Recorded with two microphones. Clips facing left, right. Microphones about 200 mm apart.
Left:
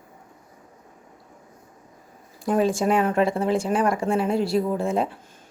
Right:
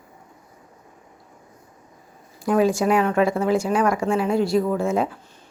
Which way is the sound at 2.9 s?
30° left (ahead or behind).